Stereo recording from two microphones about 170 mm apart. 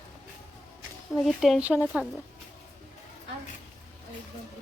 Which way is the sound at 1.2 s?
Centre (ahead or behind).